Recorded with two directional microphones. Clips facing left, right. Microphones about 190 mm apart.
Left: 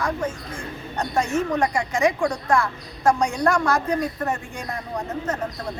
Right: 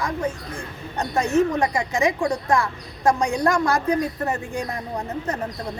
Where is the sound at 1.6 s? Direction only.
20° right (ahead or behind).